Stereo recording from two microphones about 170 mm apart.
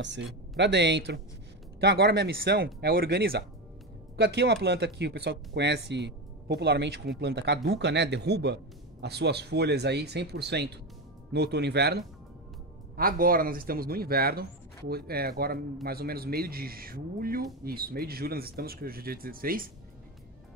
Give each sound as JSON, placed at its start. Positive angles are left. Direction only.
{"t": 0.0, "sound": "speech", "side_deg": -90}
{"t": 1.8, "sound": "speech", "side_deg": -70}
{"t": 4.2, "sound": "speech", "side_deg": -75}
{"t": 12.9, "sound": "a man's voice", "side_deg": -60}